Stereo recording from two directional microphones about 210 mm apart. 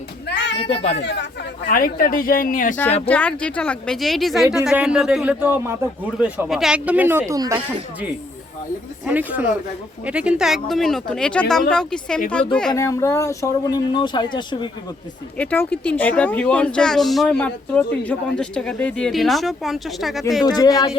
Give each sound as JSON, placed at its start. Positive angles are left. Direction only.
{"t": 0.3, "sound": "a sound", "side_deg": 55}
{"t": 0.6, "sound": "speech", "side_deg": 30}
{"t": 0.9, "sound": "speech", "side_deg": 55}
{"t": 1.6, "sound": "speech", "side_deg": 40}
{"t": 3.1, "sound": "speech", "side_deg": 5}
{"t": 9.0, "sound": "speech", "side_deg": -5}
{"t": 12.7, "sound": "speech", "side_deg": 15}
{"t": 15.4, "sound": "speech", "side_deg": 5}
{"t": 20.4, "sound": "speech", "side_deg": 20}